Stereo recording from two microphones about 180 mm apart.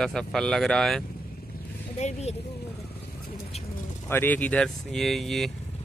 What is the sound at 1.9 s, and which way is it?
Speech, 40° left (ahead or behind).